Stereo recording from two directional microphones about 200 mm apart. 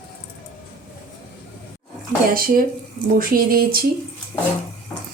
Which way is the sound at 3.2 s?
45° right (ahead or behind).